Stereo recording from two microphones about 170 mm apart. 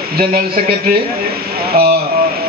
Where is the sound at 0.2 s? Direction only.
60° right (ahead or behind).